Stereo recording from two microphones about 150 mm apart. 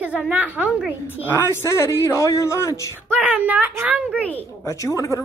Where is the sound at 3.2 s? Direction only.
10° right (ahead or behind).